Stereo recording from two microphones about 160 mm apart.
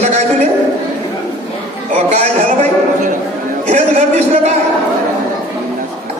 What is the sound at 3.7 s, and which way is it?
Speech, 45° right (ahead or behind).